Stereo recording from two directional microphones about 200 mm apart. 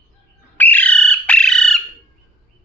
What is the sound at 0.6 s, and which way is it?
Bird, 10° left (ahead or behind).